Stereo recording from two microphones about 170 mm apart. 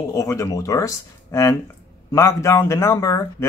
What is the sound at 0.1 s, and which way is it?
Speech, 20° left (ahead or behind).